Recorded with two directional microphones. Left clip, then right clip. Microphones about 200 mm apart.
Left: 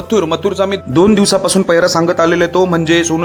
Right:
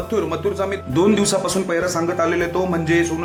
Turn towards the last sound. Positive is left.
turn(degrees=45)  # may be behind; listen again after turning